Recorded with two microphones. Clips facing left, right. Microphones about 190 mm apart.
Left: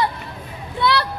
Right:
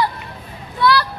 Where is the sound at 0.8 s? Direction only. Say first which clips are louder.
Right 3 dB; 20° left (ahead or behind).